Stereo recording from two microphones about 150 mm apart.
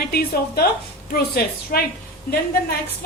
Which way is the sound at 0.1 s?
90° left.